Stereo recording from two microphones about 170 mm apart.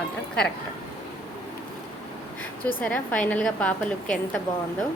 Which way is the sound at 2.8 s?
5° left (ahead or behind).